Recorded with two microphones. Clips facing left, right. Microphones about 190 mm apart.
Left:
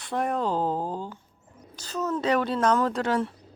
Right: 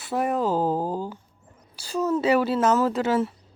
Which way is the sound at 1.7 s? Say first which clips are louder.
Right 5 dB; 10° right (ahead or behind).